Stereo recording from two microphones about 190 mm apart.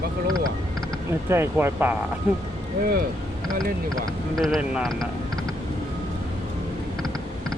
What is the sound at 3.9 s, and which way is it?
Speech, centre (ahead or behind).